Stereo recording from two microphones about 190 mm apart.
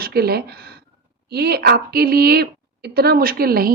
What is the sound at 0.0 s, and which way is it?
A woman's voice, 55° right (ahead or behind).